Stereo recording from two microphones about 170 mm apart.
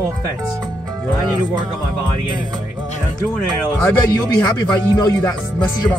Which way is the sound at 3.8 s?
10° left (ahead or behind).